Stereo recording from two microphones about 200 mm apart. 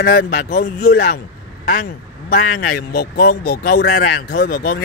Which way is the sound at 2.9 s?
50° left (ahead or behind).